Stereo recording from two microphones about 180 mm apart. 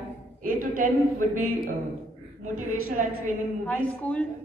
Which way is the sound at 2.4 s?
45° right (ahead or behind).